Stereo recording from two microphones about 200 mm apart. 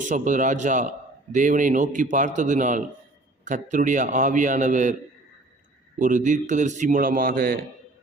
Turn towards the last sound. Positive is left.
turn(degrees=-45)  # may be behind; listen again after turning